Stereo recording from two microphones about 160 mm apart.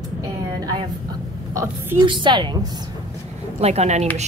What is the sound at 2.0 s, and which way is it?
Speech, 30° right (ahead or behind).